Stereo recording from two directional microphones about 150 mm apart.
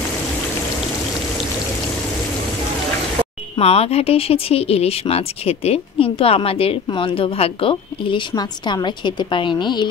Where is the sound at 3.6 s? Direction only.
40° left (ahead or behind).